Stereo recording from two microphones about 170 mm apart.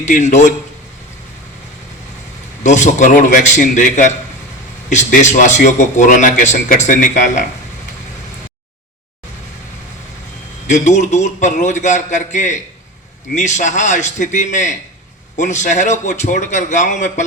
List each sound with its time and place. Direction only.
0.0 s a man's voice: 45° left (ahead or behind)
2.6 s a man's voice: 45° left (ahead or behind)
10.7 s a man's voice: 45° left (ahead or behind)